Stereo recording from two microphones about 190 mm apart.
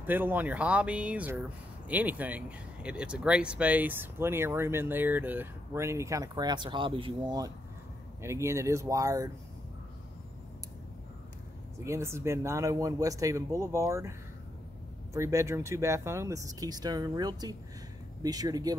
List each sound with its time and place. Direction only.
0.0 s speech: 10° right (ahead or behind)
11.8 s speech: 15° right (ahead or behind)
15.1 s speech: 15° right (ahead or behind)